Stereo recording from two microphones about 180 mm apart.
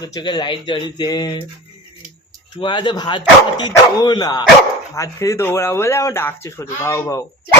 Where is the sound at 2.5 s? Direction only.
25° left (ahead or behind).